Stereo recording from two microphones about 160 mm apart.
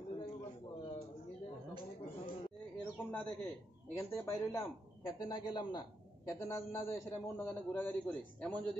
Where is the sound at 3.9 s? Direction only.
15° left (ahead or behind).